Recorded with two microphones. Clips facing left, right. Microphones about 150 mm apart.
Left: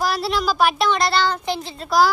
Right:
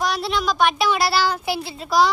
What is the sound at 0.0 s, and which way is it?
A child's voice, centre (ahead or behind).